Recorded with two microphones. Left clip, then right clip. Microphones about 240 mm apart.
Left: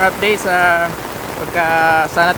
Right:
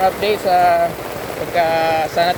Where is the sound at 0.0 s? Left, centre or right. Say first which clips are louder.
Left 2 dB; centre.